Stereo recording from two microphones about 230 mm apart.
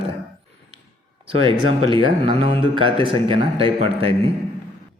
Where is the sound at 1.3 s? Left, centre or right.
Right.